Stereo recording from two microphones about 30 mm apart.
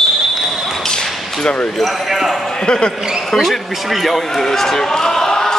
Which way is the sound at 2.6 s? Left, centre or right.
Left.